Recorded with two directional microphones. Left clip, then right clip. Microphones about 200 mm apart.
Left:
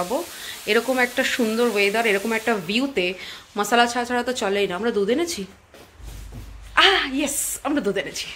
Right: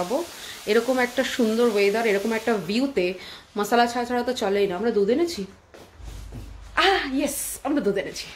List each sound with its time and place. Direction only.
0.7 s speech: 5° right (ahead or behind)
6.7 s speech: 5° right (ahead or behind)